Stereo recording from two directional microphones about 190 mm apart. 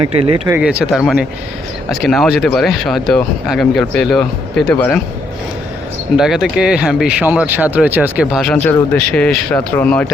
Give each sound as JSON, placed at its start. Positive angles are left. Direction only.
{"t": 0.0, "sound": "speech", "side_deg": -30}
{"t": 0.6, "sound": "speech", "side_deg": -5}
{"t": 6.1, "sound": "speech", "side_deg": 0}